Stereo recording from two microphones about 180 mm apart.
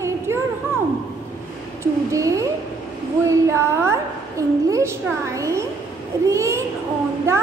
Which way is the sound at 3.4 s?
15° right (ahead or behind).